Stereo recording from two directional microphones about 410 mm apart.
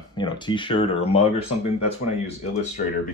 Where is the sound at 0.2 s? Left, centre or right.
Centre.